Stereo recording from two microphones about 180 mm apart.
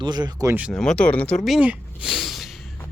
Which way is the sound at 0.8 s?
5° left (ahead or behind).